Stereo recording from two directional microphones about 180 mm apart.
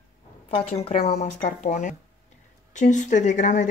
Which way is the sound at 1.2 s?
45° left (ahead or behind).